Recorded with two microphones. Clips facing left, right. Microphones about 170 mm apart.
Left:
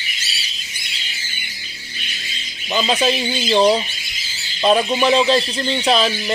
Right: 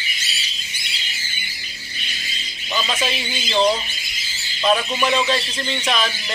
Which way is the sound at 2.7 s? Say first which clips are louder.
Left 6 dB; 35° left (ahead or behind).